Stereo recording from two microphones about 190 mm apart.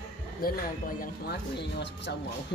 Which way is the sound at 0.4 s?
50° left (ahead or behind).